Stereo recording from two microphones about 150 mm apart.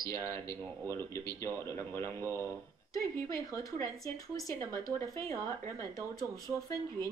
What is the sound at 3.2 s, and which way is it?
Speech, 20° left (ahead or behind).